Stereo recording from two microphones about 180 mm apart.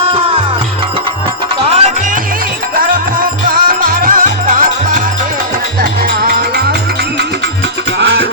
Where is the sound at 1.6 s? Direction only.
35° right (ahead or behind); by 6.7 s 60° right (ahead or behind).